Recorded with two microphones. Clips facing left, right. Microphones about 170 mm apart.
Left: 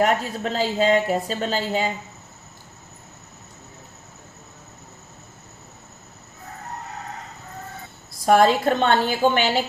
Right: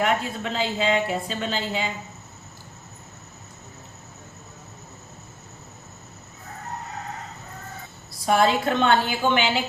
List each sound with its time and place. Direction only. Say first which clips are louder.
0.0 s speech: left 3 dB; 40° left (ahead or behind)
8.3 s speech: left 4 dB; 40° left (ahead or behind)